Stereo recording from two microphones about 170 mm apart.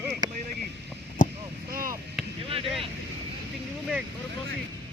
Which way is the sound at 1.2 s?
50° left (ahead or behind).